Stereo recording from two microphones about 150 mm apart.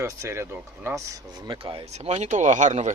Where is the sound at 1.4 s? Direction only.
35° right (ahead or behind); by 2.9 s 55° right (ahead or behind).